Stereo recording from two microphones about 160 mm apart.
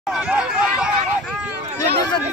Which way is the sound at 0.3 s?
5° right (ahead or behind).